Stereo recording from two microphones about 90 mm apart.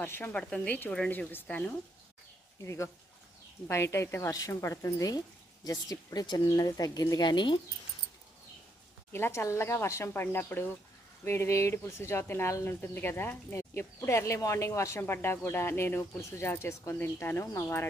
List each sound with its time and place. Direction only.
0.0 s speech: 20° left (ahead or behind)
2.6 s a woman's voice: 35° left (ahead or behind); by 7.6 s 60° left (ahead or behind)
9.1 s speech: 30° left (ahead or behind)